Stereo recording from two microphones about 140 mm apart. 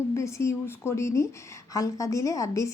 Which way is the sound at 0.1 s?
20° left (ahead or behind).